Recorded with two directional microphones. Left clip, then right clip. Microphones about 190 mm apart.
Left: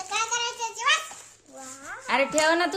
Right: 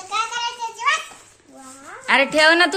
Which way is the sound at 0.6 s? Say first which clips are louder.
Right 3 dB; 40° left (ahead or behind).